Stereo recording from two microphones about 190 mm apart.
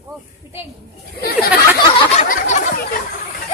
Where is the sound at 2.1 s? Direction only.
40° left (ahead or behind).